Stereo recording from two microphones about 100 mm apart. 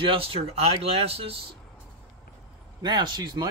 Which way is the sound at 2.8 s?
45° right (ahead or behind).